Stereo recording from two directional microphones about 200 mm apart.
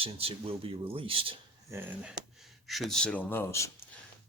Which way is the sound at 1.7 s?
5° right (ahead or behind).